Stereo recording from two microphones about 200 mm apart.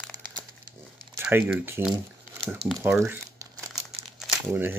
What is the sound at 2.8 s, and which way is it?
Crumpling, 10° right (ahead or behind).